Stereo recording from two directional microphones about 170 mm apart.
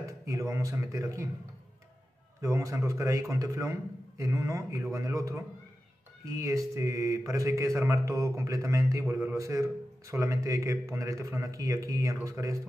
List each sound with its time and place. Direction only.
0.0 s speech: 20° right (ahead or behind)
2.4 s a man's voice: 20° right (ahead or behind)